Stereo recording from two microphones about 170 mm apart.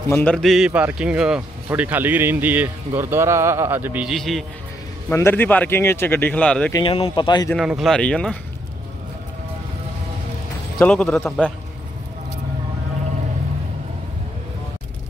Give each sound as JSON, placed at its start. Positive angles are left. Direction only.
{"t": 0.1, "sound": "speech", "side_deg": 10}
{"t": 4.1, "sound": "speech", "side_deg": 0}
{"t": 5.1, "sound": "speech", "side_deg": 15}
{"t": 6.7, "sound": "speech", "side_deg": 30}
{"t": 7.5, "sound": "speech", "side_deg": 0}
{"t": 10.8, "sound": "speech", "side_deg": 5}